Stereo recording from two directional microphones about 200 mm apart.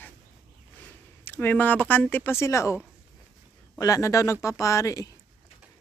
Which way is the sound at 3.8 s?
15° left (ahead or behind).